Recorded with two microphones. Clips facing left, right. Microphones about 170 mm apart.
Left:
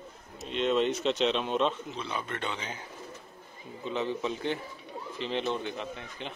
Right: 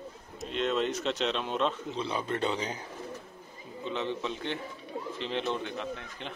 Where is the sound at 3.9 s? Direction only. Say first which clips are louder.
Left 2 dB; 5° left (ahead or behind).